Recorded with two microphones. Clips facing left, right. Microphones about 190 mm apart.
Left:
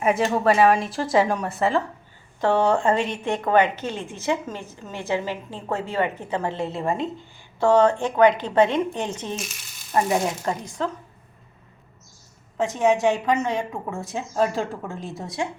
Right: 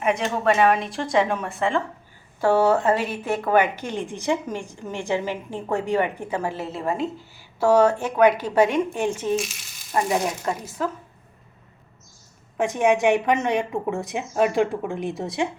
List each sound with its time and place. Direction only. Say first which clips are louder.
0.0 s a woman's voice: left 2 dB; 5° left (ahead or behind); by 9.3 s 10° right (ahead or behind)
10.7 s a woman's voice: even; 5° right (ahead or behind)
12.5 s a woman's voice: right 1 dB; 15° right (ahead or behind)